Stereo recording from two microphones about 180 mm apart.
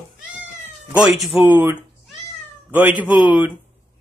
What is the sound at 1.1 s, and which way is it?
Speech, centre (ahead or behind).